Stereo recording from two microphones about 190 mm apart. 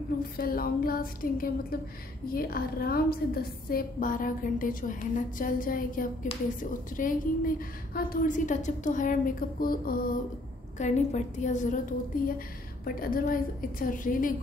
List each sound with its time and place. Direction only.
0.4 s a woman's voice: 50° left (ahead or behind)
6.3 s a woman's voice: 30° left (ahead or behind)
6.6 s a woman's voice: 45° left (ahead or behind)
10.8 s a woman's voice: 35° left (ahead or behind)
12.8 s a woman's voice: 50° left (ahead or behind)